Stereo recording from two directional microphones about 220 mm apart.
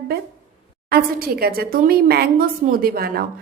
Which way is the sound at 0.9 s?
40° right (ahead or behind).